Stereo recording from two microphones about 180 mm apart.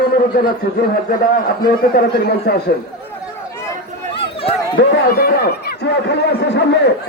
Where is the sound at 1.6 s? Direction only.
60° left (ahead or behind).